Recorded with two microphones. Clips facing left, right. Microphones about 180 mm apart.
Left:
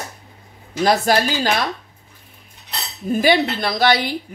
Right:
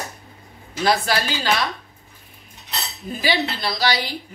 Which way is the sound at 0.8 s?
45° left (ahead or behind).